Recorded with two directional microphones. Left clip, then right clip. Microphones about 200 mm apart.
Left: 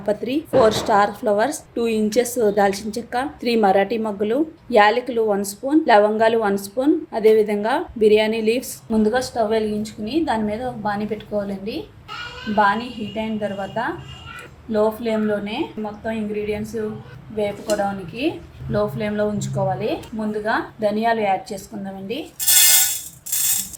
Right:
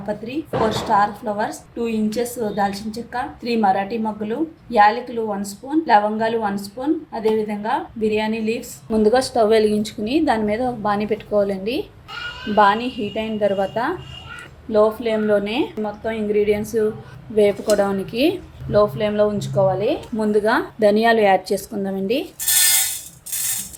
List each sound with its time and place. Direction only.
0.0 s a woman's voice: 45° left (ahead or behind)
8.9 s a woman's voice: 20° right (ahead or behind)
9.3 s a woman's voice: 35° right (ahead or behind)
15.4 s a woman's voice: 40° right (ahead or behind)
18.7 s a woman's voice: 25° right (ahead or behind)
20.4 s a woman's voice: 50° right (ahead or behind)